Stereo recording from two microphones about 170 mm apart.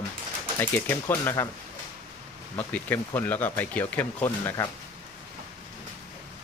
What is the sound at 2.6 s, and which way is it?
Speech, 10° left (ahead or behind).